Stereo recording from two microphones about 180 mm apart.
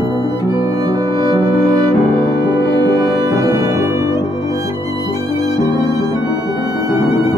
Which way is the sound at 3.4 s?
20° right (ahead or behind).